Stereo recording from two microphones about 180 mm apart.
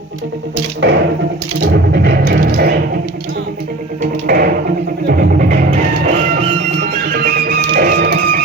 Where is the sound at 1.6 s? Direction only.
65° right (ahead or behind).